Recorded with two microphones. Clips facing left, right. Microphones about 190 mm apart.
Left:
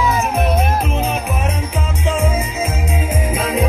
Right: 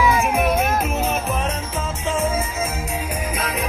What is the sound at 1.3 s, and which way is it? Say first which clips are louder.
Music: left 2 dB; 15° left (ahead or behind).